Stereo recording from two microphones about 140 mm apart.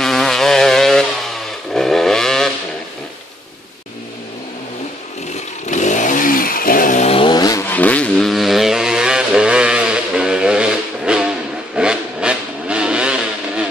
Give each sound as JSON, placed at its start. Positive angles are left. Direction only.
{"t": 0.0, "sound": "vehicle", "side_deg": 0}
{"t": 5.7, "sound": "chainsaw", "side_deg": 60}
{"t": 7.1, "sound": "a sound", "side_deg": 35}
{"t": 7.7, "sound": "vehicle", "side_deg": 10}